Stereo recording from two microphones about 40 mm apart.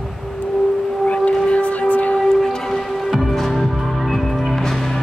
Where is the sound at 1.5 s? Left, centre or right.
Left.